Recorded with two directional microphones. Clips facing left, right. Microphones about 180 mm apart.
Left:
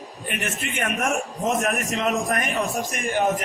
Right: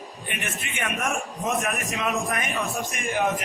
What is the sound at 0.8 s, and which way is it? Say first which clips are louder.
A man's voice: left 3 dB; 40° left (ahead or behind).